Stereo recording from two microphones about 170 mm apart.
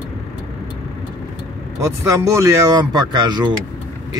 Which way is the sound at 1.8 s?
20° right (ahead or behind).